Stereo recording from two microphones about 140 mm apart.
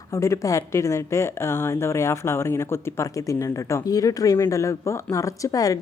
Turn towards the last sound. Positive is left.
turn(degrees=25)  # may be behind; listen again after turning